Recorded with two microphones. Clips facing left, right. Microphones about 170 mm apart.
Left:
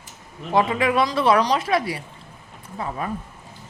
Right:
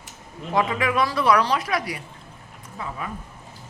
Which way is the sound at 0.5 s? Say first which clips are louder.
Left 3 dB; 30° left (ahead or behind).